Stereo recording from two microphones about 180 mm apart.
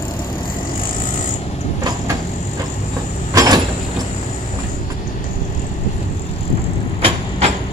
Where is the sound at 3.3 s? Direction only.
20° right (ahead or behind).